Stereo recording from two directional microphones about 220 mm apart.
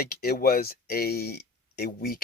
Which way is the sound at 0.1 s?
45° left (ahead or behind).